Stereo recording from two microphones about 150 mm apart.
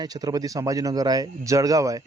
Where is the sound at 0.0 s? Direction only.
25° right (ahead or behind).